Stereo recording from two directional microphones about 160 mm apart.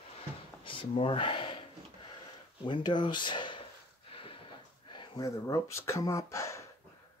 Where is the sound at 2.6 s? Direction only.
30° left (ahead or behind).